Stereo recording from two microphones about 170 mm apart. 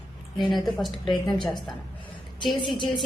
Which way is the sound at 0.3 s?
Centre (ahead or behind).